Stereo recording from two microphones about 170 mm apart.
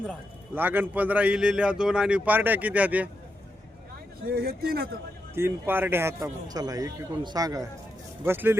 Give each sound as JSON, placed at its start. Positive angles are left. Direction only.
{"t": 0.5, "sound": "a man's voice", "side_deg": -10}
{"t": 4.3, "sound": "speech", "side_deg": -65}
{"t": 5.3, "sound": "a man's voice", "side_deg": -15}